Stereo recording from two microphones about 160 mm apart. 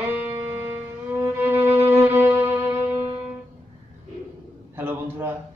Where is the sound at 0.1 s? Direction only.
15° right (ahead or behind).